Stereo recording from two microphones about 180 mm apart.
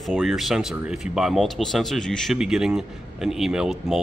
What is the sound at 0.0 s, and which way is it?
Speech, centre (ahead or behind).